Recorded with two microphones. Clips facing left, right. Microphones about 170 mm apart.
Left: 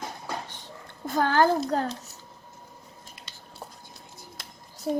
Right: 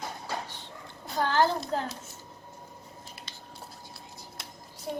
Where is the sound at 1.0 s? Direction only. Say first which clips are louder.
Left 3 dB; 50° left (ahead or behind).